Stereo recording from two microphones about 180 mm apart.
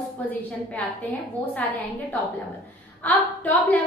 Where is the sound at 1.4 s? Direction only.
10° left (ahead or behind).